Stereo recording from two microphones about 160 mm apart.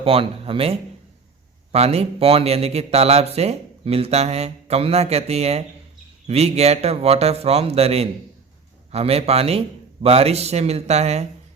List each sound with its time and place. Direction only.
0.0 s speech: 35° right (ahead or behind)